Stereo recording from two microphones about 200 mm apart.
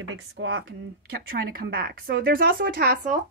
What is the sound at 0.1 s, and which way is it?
Speech, 75° right (ahead or behind).